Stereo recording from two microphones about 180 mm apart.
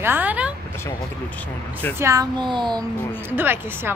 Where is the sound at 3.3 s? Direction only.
10° right (ahead or behind).